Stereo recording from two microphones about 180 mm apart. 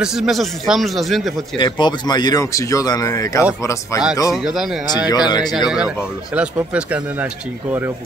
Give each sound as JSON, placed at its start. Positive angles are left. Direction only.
{"t": 0.0, "sound": "speech", "side_deg": 0}
{"t": 1.6, "sound": "speech", "side_deg": 25}
{"t": 4.3, "sound": "speech", "side_deg": 0}
{"t": 5.0, "sound": "speech", "side_deg": 25}
{"t": 5.7, "sound": "speech", "side_deg": -5}